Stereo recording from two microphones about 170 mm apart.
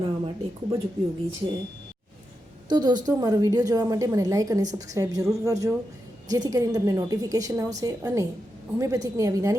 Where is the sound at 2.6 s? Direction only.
25° right (ahead or behind).